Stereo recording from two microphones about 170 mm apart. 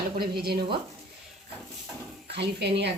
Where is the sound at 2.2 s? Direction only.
80° right.